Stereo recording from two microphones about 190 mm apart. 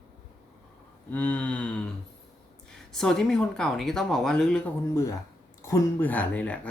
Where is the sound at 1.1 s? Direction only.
10° left (ahead or behind).